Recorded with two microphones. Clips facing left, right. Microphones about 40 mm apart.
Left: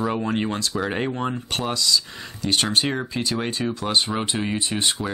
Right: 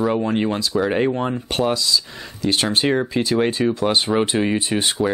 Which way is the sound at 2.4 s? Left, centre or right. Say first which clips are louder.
Right 3 dB; right.